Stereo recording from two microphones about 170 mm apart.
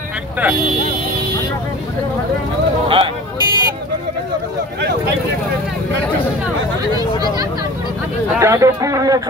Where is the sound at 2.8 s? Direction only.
35° right (ahead or behind).